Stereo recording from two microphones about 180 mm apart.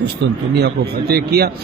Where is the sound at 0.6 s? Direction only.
60° right (ahead or behind).